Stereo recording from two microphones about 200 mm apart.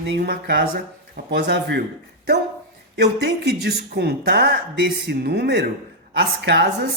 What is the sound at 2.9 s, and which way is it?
Speech, 55° right (ahead or behind).